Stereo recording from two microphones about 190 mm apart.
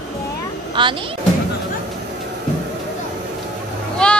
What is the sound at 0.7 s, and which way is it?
Speech, 25° right (ahead or behind).